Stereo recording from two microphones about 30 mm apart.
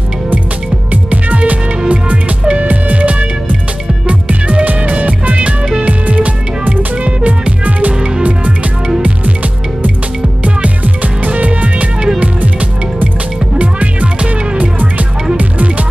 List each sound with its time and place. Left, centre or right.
1.1 s music: right
4.1 s music: right
7.1 s music: right
10.4 s music: right
11.2 s music: right
13.6 s music: right